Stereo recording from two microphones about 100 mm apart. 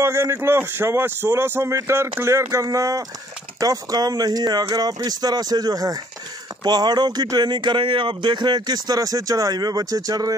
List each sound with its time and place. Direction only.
0.0 s speech: 25° right (ahead or behind)